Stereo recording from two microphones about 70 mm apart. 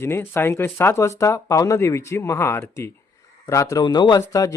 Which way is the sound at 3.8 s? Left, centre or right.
Left.